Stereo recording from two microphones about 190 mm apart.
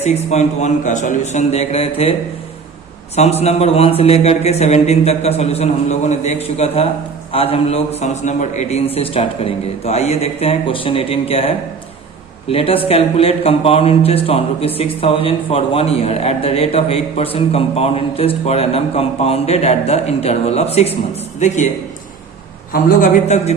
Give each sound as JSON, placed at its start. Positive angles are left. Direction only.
{"t": 0.0, "sound": "a man's voice", "side_deg": 35}
{"t": 3.4, "sound": "a man's voice", "side_deg": 30}
{"t": 22.7, "sound": "a man's voice", "side_deg": 40}